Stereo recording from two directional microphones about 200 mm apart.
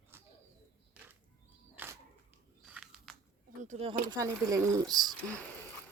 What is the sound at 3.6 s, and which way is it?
Speech, 30° right (ahead or behind).